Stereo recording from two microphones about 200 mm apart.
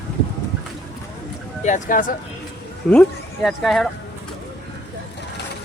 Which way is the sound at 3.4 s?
Centre (ahead or behind).